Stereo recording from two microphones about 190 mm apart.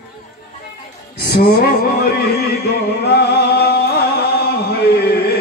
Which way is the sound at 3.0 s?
60° left (ahead or behind).